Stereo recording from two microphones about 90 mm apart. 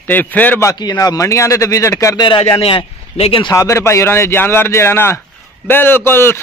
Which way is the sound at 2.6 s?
90° left.